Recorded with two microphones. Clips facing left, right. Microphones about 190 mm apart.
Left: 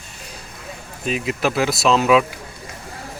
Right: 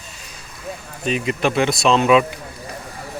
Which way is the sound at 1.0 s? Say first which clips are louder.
Right 1 dB; 5° left (ahead or behind).